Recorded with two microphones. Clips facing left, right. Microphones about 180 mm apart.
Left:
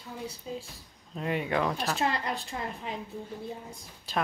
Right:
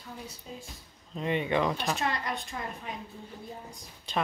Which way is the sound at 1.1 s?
5° left (ahead or behind).